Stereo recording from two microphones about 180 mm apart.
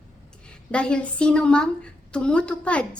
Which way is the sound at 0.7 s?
5° left (ahead or behind).